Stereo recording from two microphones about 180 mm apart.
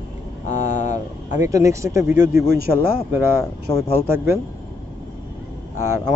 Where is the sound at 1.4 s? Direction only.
15° right (ahead or behind).